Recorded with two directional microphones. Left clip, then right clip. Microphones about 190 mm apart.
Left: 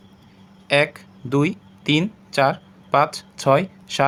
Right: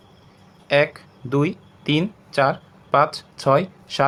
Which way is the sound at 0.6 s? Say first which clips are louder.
Even; 15° left (ahead or behind).